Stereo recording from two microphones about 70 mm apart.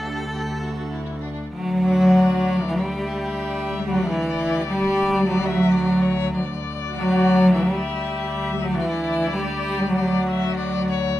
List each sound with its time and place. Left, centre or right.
1.7 s music: centre
3.9 s cello: centre
5.8 s music: centre
6.0 s music: left
7.0 s music: centre